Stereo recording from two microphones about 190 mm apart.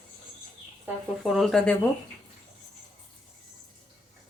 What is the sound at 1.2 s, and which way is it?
Speech, centre (ahead or behind).